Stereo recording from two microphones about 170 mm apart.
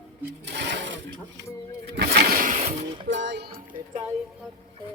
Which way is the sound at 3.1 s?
90° right.